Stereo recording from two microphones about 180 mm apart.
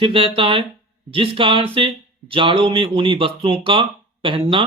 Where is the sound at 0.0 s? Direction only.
30° right (ahead or behind).